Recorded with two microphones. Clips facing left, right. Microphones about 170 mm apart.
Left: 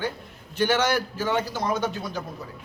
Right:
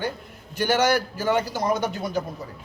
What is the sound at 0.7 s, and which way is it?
Speech, 40° right (ahead or behind).